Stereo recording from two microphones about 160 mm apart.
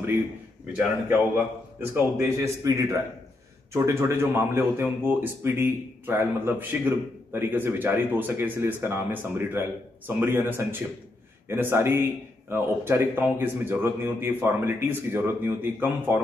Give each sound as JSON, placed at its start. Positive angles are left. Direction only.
{"t": 0.7, "sound": "speech", "side_deg": -15}